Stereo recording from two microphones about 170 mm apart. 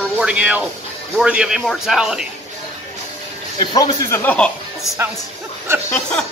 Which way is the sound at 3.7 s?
20° left (ahead or behind).